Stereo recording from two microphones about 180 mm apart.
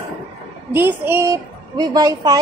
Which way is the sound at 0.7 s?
10° right (ahead or behind).